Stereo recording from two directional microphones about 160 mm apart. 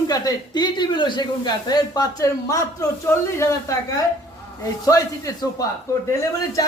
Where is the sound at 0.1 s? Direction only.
25° left (ahead or behind).